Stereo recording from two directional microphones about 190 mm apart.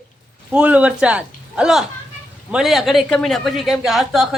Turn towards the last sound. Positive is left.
turn(degrees=0)  # may be behind; listen again after turning